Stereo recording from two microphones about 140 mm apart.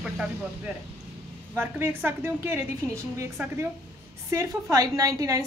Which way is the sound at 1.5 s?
15° right (ahead or behind).